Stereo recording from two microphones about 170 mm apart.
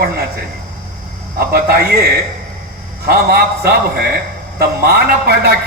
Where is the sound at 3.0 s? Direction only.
65° right (ahead or behind).